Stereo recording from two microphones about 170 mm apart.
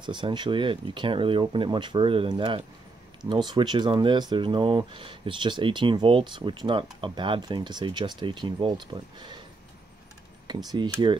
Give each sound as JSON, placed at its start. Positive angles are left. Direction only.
{"t": 0.0, "sound": "speech", "side_deg": -25}
{"t": 10.4, "sound": "speech", "side_deg": -25}